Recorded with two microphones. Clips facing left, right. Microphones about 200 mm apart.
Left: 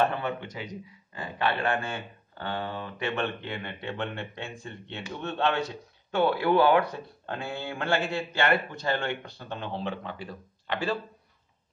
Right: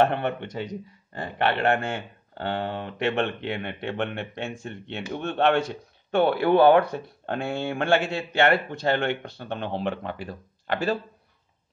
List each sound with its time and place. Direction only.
0.0 s speech: 65° right (ahead or behind)
10.7 s speech: 45° right (ahead or behind)